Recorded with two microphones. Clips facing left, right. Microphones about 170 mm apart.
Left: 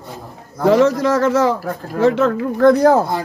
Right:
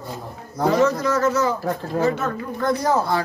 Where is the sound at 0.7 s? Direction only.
90° left; by 3.0 s 65° left (ahead or behind).